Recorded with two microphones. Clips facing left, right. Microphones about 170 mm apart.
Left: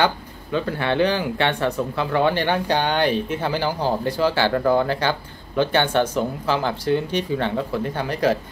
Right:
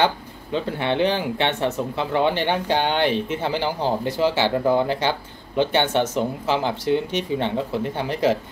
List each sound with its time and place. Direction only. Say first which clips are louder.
0.0 s speech: even; 20° right (ahead or behind)